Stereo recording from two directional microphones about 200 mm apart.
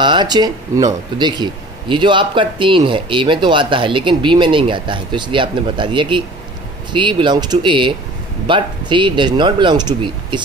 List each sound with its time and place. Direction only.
0.0 s speech: 20° right (ahead or behind)